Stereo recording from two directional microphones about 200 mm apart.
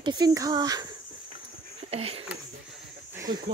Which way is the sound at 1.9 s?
30° right (ahead or behind).